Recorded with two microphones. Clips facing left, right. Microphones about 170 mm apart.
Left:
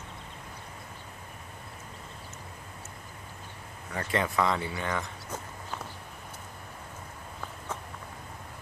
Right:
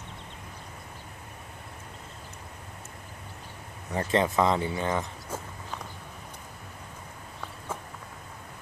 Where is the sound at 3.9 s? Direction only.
25° right (ahead or behind).